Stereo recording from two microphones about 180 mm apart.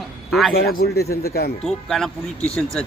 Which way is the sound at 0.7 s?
55° left (ahead or behind).